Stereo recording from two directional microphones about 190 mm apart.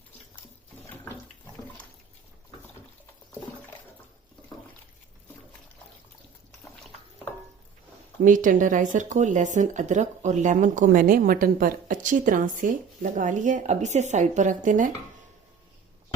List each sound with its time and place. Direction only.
8.2 s speech: 45° right (ahead or behind)